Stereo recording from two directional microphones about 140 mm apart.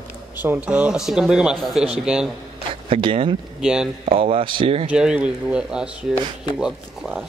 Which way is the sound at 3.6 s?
5° right (ahead or behind).